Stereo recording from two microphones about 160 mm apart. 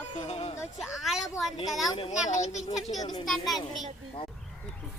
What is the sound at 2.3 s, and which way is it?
Speech, 45° left (ahead or behind).